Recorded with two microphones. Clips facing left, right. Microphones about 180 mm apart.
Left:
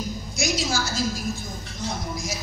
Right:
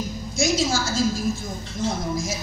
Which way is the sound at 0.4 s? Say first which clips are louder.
Right 4 dB; 25° right (ahead or behind).